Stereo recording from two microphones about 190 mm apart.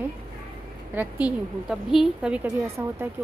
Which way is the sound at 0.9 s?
5° right (ahead or behind).